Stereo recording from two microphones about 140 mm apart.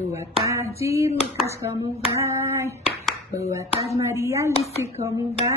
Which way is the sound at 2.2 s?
20° right (ahead or behind).